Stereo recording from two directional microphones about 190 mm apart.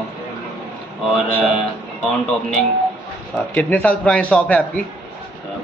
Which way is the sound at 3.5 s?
10° left (ahead or behind).